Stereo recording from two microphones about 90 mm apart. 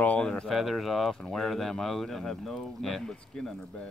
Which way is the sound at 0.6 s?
Centre (ahead or behind).